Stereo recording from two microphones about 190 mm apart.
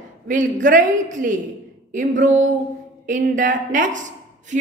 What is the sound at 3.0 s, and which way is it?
A woman's voice, 40° right (ahead or behind).